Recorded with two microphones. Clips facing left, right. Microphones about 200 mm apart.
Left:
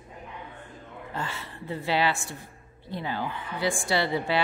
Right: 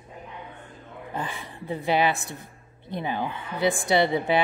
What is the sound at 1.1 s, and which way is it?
A woman's voice, 15° right (ahead or behind).